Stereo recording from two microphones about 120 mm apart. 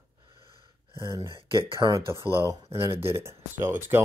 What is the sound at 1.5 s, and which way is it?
Speech, 40° right (ahead or behind).